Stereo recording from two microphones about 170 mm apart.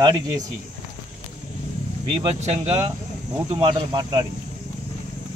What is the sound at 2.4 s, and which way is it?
Speech, 40° right (ahead or behind).